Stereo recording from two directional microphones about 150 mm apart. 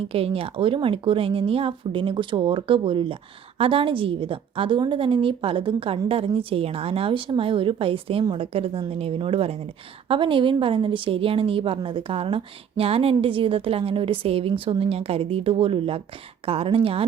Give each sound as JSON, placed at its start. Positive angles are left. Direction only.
{"t": 0.1, "sound": "a woman's voice", "side_deg": -40}